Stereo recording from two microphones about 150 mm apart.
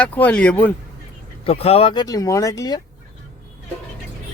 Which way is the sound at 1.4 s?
40° left (ahead or behind).